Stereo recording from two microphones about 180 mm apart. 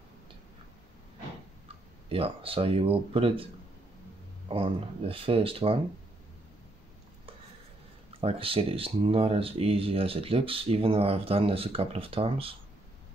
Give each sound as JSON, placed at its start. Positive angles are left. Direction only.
{"t": 2.0, "sound": "speech", "side_deg": -30}
{"t": 4.5, "sound": "speech", "side_deg": -30}
{"t": 8.2, "sound": "speech", "side_deg": -30}